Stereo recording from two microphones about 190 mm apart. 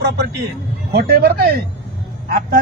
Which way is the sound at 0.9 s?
55° right (ahead or behind).